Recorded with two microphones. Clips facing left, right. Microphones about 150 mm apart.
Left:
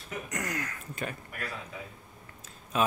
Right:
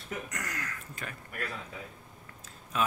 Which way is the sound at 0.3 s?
20° left (ahead or behind).